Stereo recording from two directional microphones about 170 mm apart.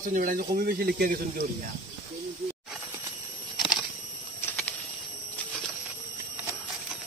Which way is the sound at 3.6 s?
Centre (ahead or behind).